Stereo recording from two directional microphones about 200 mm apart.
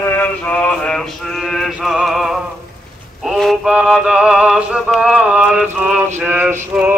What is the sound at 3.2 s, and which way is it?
Synthetic singing, centre (ahead or behind).